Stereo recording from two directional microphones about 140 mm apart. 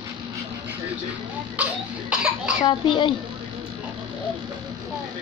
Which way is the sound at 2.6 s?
35° left (ahead or behind).